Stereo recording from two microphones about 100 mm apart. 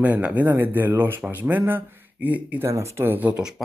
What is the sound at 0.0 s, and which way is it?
Speech, 15° right (ahead or behind).